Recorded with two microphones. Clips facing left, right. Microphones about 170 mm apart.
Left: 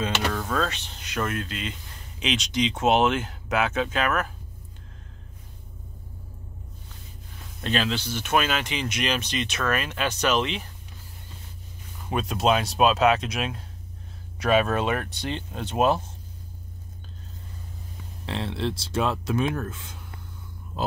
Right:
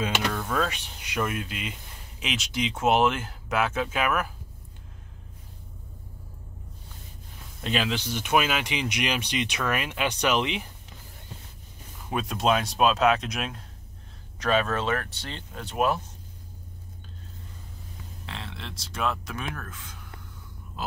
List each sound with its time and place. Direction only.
0.3 s speech: 5° right (ahead or behind)
7.6 s speech: 10° right (ahead or behind)
12.1 s speech: centre (ahead or behind); by 16.0 s 25° left (ahead or behind)
18.2 s speech: 30° left (ahead or behind)
20.7 s a sound: 30° left (ahead or behind)